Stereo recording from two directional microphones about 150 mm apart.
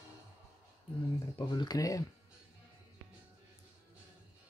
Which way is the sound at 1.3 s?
30° left (ahead or behind).